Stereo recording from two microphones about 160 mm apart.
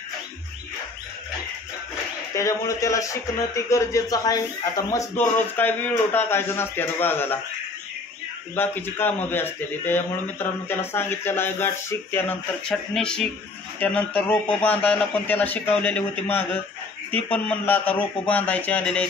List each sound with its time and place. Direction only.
2.3 s speech: 20° left (ahead or behind)
8.5 s speech: 15° left (ahead or behind)